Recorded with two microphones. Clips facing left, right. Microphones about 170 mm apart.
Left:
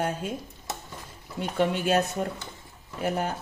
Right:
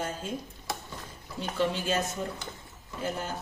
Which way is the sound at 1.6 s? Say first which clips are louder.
Left 5 dB; 60° left (ahead or behind).